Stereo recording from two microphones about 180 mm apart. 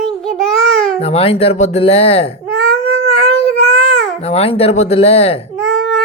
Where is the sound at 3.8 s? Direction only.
35° left (ahead or behind).